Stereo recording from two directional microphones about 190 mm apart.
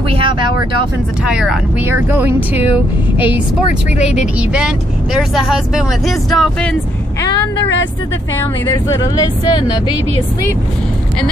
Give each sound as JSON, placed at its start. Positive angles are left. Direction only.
{"t": 0.1, "sound": "vehicle", "side_deg": -25}
{"t": 1.2, "sound": "speech", "side_deg": -5}
{"t": 4.2, "sound": "speech", "side_deg": -5}
{"t": 8.8, "sound": "speech", "side_deg": 20}